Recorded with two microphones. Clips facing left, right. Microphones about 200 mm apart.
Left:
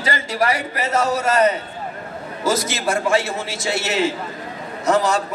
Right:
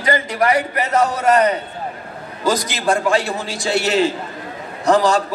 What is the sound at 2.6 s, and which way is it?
A man's voice, 25° left (ahead or behind).